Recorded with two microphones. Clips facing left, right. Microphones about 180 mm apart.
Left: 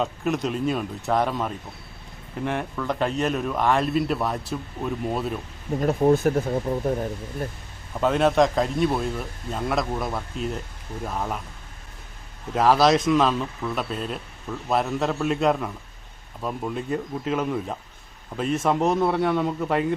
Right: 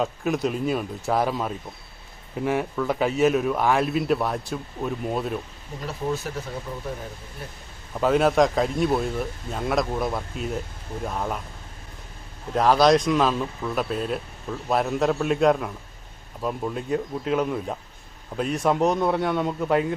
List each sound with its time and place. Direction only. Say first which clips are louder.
0.0 s a man's voice: right 1 dB; centre (ahead or behind)
5.8 s speech: left 9 dB; 50° left (ahead or behind)
8.0 s a man's voice: even; centre (ahead or behind)
12.5 s a man's voice: right 1 dB; 5° left (ahead or behind)